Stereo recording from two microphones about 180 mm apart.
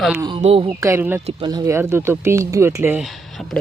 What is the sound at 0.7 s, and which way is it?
Speech, 15° right (ahead or behind).